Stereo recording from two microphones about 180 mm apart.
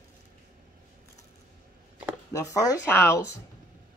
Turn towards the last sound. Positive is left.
turn(degrees=20)  # may be behind; listen again after turning